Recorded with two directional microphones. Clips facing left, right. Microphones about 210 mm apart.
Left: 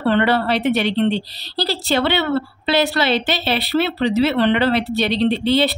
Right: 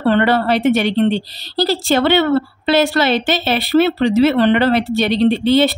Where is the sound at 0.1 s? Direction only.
45° right (ahead or behind).